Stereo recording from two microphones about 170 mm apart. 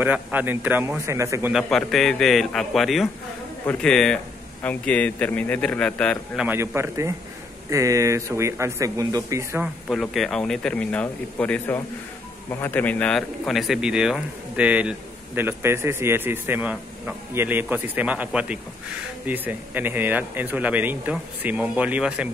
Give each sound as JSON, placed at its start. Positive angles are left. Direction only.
{"t": 0.0, "sound": "a man's voice", "side_deg": -10}
{"t": 1.5, "sound": "a man's voice", "side_deg": 0}
{"t": 6.3, "sound": "a man's voice", "side_deg": -10}
{"t": 9.8, "sound": "a man's voice", "side_deg": 0}